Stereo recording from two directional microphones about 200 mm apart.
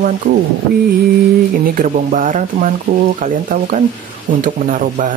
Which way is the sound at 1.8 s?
45° right (ahead or behind).